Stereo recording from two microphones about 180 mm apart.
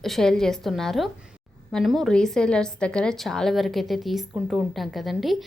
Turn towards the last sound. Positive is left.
turn(degrees=0)  # may be behind; listen again after turning